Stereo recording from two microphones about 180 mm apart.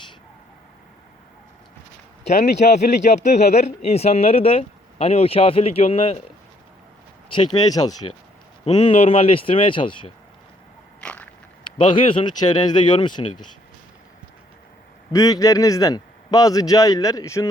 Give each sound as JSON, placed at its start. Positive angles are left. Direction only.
{"t": 3.0, "sound": "speech", "side_deg": 40}
{"t": 7.3, "sound": "a man's voice", "side_deg": 25}
{"t": 11.0, "sound": "biting", "side_deg": 10}
{"t": 11.6, "sound": "a man's voice", "side_deg": 30}
{"t": 15.1, "sound": "a man's voice", "side_deg": 20}